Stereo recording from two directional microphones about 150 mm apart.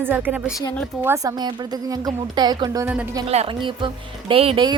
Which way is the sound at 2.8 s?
10° right (ahead or behind).